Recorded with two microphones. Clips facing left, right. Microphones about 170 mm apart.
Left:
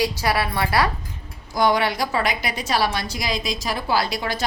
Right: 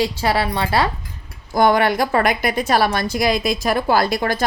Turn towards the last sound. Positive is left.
turn(degrees=-50)  # may be behind; listen again after turning